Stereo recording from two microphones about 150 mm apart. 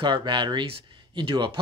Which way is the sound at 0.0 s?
30° right (ahead or behind).